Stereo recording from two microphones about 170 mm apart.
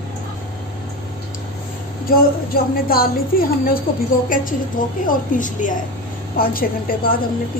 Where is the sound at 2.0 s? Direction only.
60° left (ahead or behind).